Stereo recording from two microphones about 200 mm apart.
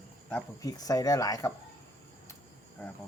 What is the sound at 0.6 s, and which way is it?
Speech, 20° left (ahead or behind).